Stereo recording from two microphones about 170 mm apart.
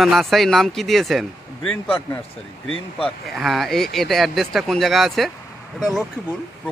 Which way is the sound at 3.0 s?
Centre (ahead or behind).